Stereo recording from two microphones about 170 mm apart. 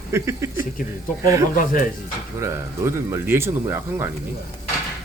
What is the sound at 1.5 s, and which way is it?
Speech, 55° left (ahead or behind).